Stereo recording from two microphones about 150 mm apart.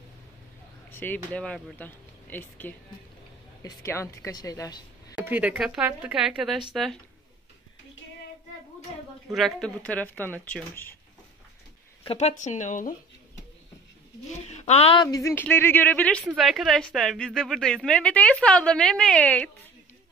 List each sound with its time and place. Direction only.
0.9 s a woman's voice: 10° left (ahead or behind)
5.1 s a woman's voice: 10° right (ahead or behind)
9.3 s speech: 5° left (ahead or behind)
12.0 s speech: 40° left (ahead or behind)
14.6 s a woman's voice: 45° left (ahead or behind)
15.0 s a woman's voice: 25° left (ahead or behind)
16.3 s a woman's voice: centre (ahead or behind)